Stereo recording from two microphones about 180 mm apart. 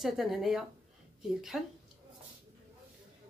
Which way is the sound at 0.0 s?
Centre (ahead or behind).